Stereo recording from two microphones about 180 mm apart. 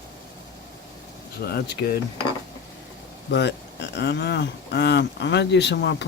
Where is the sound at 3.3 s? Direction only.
70° left (ahead or behind).